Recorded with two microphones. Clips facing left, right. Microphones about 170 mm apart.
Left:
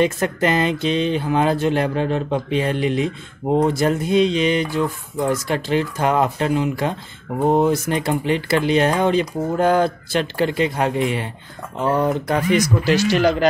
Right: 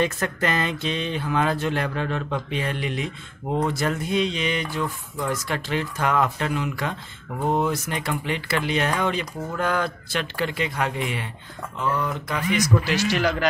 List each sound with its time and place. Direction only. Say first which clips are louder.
0.0 s speech: left 6 dB; 25° left (ahead or behind); by 12.4 s 40° left (ahead or behind)
13.2 s speech: left 6 dB; 30° left (ahead or behind)